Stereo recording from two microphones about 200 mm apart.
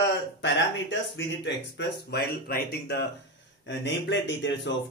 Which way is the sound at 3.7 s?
65° left (ahead or behind).